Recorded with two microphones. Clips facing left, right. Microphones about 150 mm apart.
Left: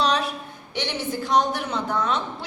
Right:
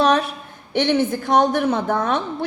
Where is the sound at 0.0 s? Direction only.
50° right (ahead or behind).